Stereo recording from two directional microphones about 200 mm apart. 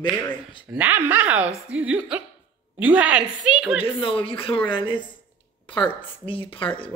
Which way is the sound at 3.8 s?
25° left (ahead or behind).